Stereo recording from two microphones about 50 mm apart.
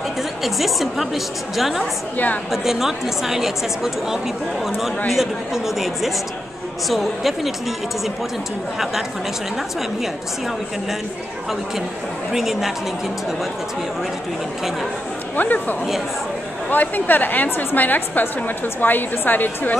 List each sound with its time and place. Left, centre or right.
0.4 s a woman's voice: centre
12.3 s a woman's voice: centre
15.3 s a woman's voice: left
16.7 s a woman's voice: left